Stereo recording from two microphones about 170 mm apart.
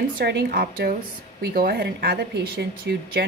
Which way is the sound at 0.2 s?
65° right (ahead or behind).